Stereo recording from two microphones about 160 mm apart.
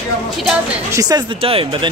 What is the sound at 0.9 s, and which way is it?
Speech, 25° right (ahead or behind).